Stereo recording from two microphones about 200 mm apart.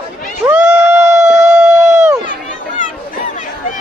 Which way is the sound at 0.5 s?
5° right (ahead or behind).